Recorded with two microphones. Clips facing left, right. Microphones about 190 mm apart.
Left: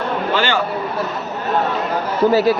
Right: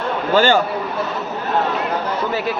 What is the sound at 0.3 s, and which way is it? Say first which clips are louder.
Speech: right 7 dB; 45° right (ahead or behind).